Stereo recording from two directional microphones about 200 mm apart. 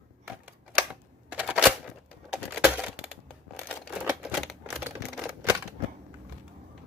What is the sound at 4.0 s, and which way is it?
Typewriter, 5° right (ahead or behind).